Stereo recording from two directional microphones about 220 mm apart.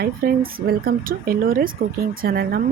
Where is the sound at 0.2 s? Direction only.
40° right (ahead or behind).